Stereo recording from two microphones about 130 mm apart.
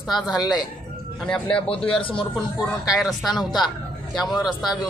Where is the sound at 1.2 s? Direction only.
10° left (ahead or behind).